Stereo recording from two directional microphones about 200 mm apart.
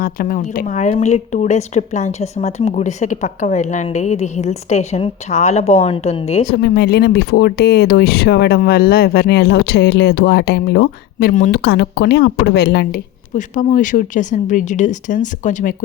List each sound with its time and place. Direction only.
0.0 s speech: 45° left (ahead or behind)
6.4 s speech: 55° left (ahead or behind)
13.3 s speech: 40° left (ahead or behind)